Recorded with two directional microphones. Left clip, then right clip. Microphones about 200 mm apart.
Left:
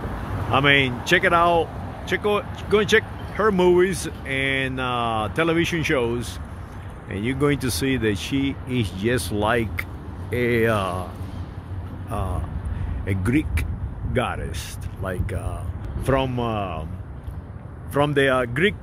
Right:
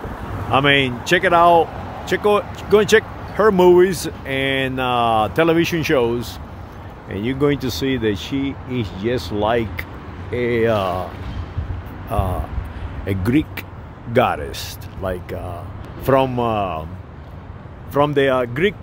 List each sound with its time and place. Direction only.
0.5 s speech: 25° right (ahead or behind)
12.1 s speech: 20° right (ahead or behind)
14.1 s speech: 30° right (ahead or behind)
17.9 s speech: 10° right (ahead or behind)